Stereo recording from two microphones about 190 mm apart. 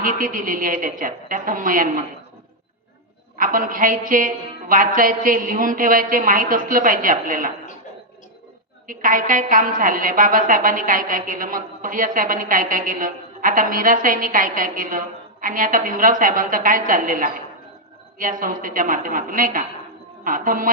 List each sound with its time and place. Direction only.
0.0 s a woman's voice: 45° right (ahead or behind)
3.3 s a woman's voice: 45° right (ahead or behind)
8.9 s a woman's voice: 45° right (ahead or behind)